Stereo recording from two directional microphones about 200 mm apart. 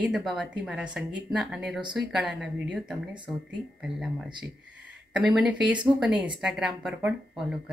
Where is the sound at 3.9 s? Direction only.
25° right (ahead or behind).